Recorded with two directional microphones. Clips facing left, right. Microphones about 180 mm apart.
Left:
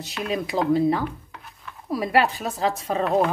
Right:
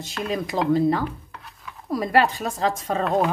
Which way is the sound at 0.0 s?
Centre (ahead or behind).